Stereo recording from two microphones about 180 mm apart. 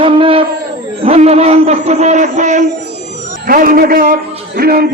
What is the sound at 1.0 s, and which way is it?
A man's voice, 35° right (ahead or behind).